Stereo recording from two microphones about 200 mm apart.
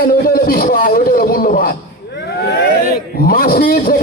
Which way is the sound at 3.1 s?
45° left (ahead or behind).